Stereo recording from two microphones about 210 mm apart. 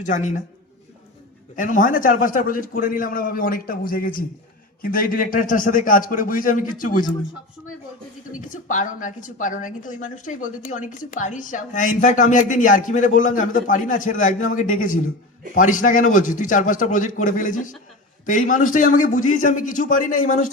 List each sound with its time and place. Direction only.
0.0 s a woman's voice: 35° left (ahead or behind)
1.5 s a woman's voice: 40° left (ahead or behind)
8.4 s a woman's voice: 40° left (ahead or behind)